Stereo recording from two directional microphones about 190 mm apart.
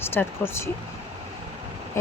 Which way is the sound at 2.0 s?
15° left (ahead or behind).